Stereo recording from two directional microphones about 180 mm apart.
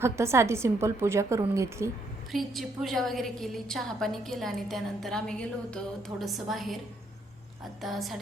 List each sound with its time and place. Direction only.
0.0 s a woman's voice: 15° right (ahead or behind)
2.3 s a woman's voice: centre (ahead or behind)
7.8 s a woman's voice: centre (ahead or behind)